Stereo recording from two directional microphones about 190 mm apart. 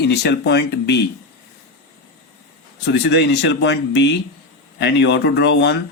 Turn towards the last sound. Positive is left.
turn(degrees=65)  # may be behind; listen again after turning